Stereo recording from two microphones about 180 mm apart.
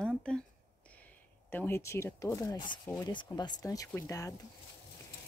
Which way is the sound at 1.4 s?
10° left (ahead or behind).